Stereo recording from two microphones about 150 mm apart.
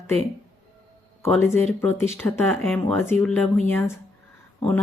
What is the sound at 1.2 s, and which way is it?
Speech, 15° left (ahead or behind).